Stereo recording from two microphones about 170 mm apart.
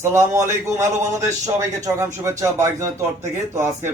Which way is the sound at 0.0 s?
15° right (ahead or behind).